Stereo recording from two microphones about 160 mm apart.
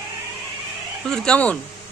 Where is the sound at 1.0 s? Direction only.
5° left (ahead or behind).